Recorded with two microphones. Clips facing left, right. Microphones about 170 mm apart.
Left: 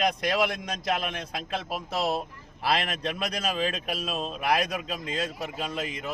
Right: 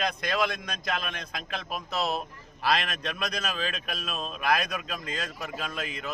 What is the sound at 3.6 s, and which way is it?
A man's voice, 25° left (ahead or behind).